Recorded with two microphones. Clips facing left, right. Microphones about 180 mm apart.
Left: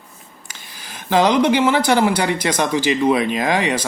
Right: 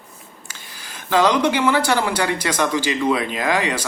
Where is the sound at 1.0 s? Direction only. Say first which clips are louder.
Left 2 dB; 10° left (ahead or behind).